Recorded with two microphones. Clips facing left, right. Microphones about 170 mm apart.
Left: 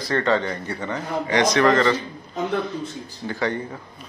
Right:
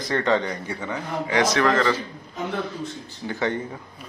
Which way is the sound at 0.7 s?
5° right (ahead or behind).